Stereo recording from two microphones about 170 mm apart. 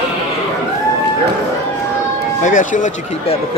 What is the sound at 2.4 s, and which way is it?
Speech, 50° left (ahead or behind).